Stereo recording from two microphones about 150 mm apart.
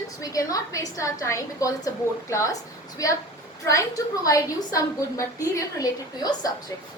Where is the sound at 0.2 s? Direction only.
20° left (ahead or behind).